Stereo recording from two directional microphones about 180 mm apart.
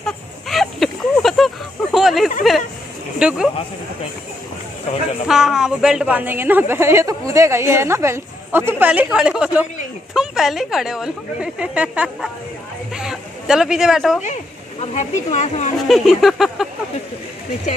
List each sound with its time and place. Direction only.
0.0 s a sound: centre (ahead or behind)
3.2 s speech: 5° right (ahead or behind)
5.3 s a woman's voice: 5° right (ahead or behind)
14.2 s speech: 40° left (ahead or behind)
15.9 s speech: centre (ahead or behind)